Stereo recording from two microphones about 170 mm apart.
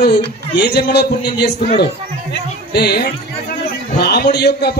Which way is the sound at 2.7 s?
75° left (ahead or behind).